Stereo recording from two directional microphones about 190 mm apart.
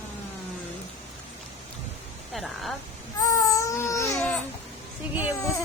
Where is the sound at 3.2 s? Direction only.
15° left (ahead or behind).